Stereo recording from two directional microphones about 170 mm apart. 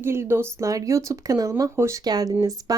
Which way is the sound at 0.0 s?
15° right (ahead or behind).